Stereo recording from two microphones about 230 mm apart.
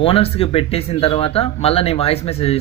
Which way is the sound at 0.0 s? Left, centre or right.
Left.